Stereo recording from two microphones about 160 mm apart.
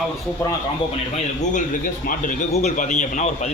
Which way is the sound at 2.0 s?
60° left (ahead or behind).